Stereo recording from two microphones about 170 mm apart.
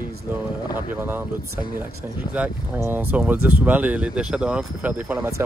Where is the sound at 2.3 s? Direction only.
10° right (ahead or behind).